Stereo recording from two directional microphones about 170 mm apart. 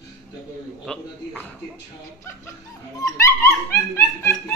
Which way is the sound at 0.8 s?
10° left (ahead or behind).